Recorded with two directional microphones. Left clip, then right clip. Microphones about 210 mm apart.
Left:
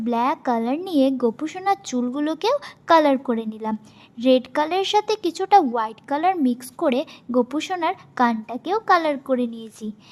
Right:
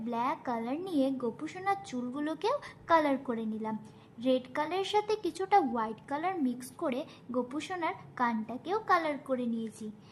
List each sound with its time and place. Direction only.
0.0 s a woman's voice: 35° left (ahead or behind)